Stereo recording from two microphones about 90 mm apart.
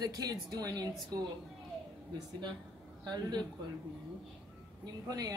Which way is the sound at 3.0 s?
50° right (ahead or behind).